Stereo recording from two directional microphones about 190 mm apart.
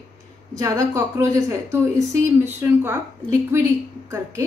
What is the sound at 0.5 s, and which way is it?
A woman's voice, 15° right (ahead or behind).